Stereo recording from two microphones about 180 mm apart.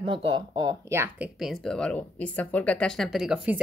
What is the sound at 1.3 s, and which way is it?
Speech, centre (ahead or behind).